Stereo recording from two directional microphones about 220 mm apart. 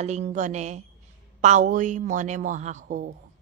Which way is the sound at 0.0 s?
30° right (ahead or behind).